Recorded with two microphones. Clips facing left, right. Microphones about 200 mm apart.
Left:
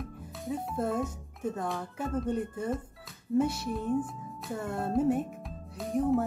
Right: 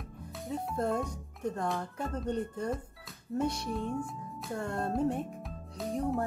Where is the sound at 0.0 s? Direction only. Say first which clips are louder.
Left 3 dB; centre (ahead or behind).